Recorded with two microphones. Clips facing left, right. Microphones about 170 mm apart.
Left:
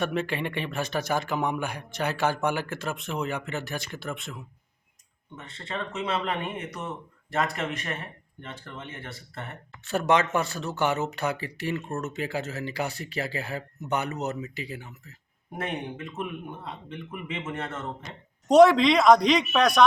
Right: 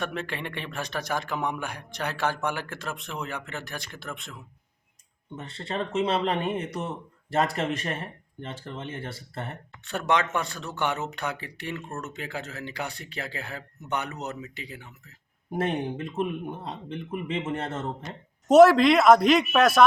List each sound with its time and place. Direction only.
0.0 s speech: 5° left (ahead or behind)
5.4 s speech: 30° right (ahead or behind)
9.8 s speech: 5° left (ahead or behind)
15.5 s speech: 30° right (ahead or behind)
18.4 s speech: centre (ahead or behind)